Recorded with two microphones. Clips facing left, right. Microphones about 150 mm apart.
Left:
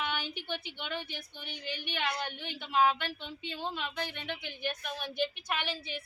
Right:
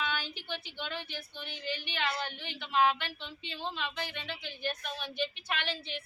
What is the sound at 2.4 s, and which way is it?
Speech, 50° left (ahead or behind).